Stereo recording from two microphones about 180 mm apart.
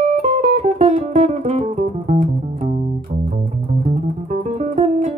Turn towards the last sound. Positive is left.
turn(degrees=-40)  # may be behind; listen again after turning